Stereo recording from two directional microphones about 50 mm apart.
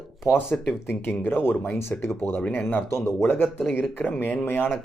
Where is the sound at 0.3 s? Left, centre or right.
Left.